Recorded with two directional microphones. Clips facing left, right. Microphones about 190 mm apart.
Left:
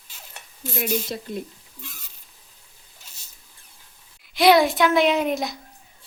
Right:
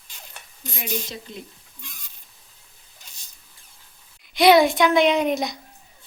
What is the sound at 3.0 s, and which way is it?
Rodents, 5° left (ahead or behind).